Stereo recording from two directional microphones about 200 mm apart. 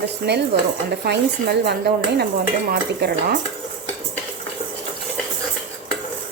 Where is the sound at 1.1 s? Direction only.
55° right (ahead or behind).